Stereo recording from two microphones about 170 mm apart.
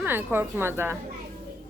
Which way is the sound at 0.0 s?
10° right (ahead or behind).